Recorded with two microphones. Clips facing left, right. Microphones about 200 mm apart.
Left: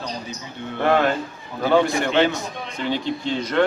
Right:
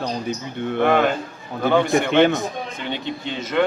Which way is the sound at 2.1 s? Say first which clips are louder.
Right 3 dB; 60° right (ahead or behind).